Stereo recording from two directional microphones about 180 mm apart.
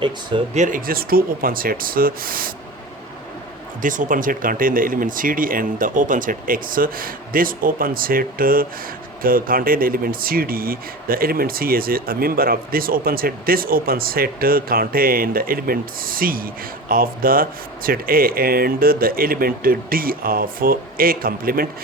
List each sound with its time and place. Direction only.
0.0 s speech: 25° right (ahead or behind)
0.5 s speech: 45° right (ahead or behind)
3.8 s speech: 45° right (ahead or behind)